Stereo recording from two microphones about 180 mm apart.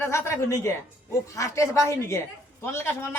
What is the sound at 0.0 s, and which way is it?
A woman's voice, 15° left (ahead or behind).